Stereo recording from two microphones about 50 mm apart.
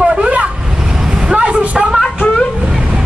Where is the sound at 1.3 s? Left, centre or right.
Right.